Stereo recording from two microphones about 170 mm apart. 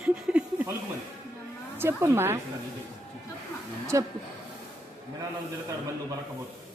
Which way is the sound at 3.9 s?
20° right (ahead or behind).